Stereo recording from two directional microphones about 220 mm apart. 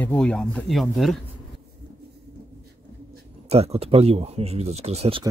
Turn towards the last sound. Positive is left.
turn(degrees=-25)  # may be behind; listen again after turning